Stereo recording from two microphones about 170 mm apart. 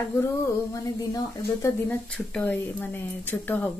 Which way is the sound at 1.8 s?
10° left (ahead or behind).